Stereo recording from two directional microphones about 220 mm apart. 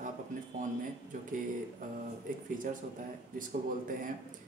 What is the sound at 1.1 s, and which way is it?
Speech, 40° right (ahead or behind).